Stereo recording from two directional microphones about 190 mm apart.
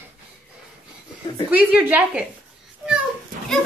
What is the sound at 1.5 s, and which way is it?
Speech, 10° right (ahead or behind).